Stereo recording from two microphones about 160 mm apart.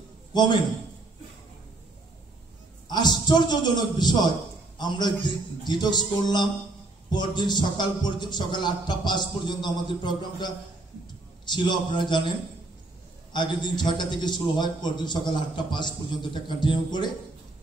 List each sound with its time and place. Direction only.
0.3 s a man's voice: 30° left (ahead or behind)
2.9 s a man's voice: 25° left (ahead or behind)